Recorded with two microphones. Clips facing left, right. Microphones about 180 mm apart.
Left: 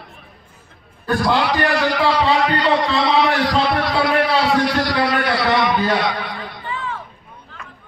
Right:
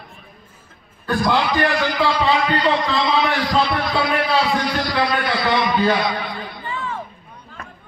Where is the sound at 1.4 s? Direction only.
75° left (ahead or behind).